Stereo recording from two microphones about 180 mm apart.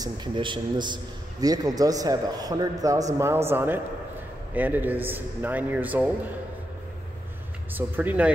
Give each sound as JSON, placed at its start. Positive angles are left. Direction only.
{"t": 0.0, "sound": "a man's voice", "side_deg": -25}
{"t": 7.7, "sound": "a man's voice", "side_deg": -10}